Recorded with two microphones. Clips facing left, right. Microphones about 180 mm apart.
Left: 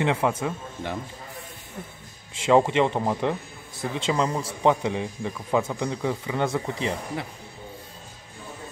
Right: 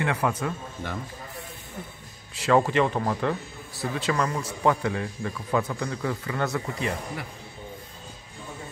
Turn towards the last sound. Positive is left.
turn(degrees=25)  # may be behind; listen again after turning